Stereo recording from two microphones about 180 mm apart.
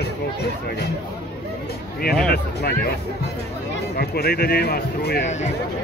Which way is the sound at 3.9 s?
60° left (ahead or behind).